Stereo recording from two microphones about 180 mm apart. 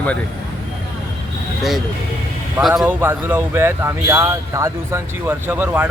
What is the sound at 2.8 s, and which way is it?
Speech, 10° right (ahead or behind).